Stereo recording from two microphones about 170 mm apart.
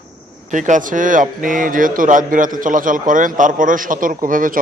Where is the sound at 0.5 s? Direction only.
50° right (ahead or behind).